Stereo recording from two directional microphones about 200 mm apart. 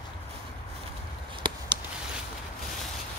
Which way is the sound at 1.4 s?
25° right (ahead or behind).